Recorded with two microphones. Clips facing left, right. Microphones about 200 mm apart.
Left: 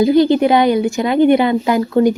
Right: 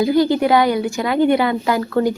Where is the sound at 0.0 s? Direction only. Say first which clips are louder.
Left 4 dB; 20° left (ahead or behind).